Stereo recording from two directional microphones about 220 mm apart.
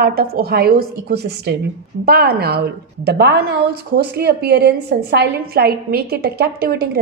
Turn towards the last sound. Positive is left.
turn(degrees=-45)  # may be behind; listen again after turning